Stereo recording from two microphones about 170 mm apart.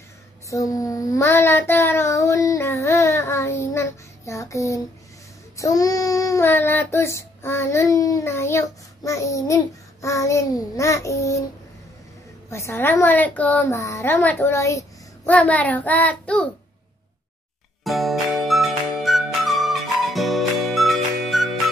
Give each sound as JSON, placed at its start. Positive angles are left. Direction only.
{"t": 0.5, "sound": "child singing", "side_deg": 20}
{"t": 10.0, "sound": "a woman's voice", "side_deg": 20}
{"t": 12.4, "sound": "a woman's voice", "side_deg": 15}
{"t": 17.8, "sound": "music", "side_deg": 0}